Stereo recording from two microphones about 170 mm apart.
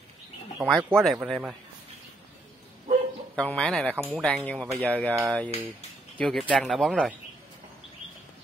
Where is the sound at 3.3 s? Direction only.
5° left (ahead or behind).